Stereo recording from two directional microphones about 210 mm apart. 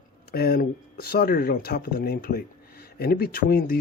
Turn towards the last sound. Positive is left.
turn(degrees=45)  # may be behind; listen again after turning